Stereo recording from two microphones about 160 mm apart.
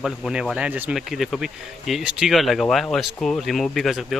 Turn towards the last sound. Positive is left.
turn(degrees=0)  # may be behind; listen again after turning